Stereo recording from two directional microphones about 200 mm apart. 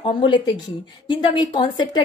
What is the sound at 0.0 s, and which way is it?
Speech, 25° left (ahead or behind).